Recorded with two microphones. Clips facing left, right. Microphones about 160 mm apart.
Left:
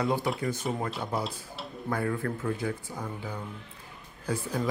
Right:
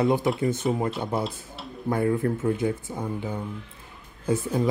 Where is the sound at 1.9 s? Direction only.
25° right (ahead or behind).